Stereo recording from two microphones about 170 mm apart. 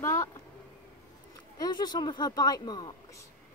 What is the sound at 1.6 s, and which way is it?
Speech, 25° left (ahead or behind).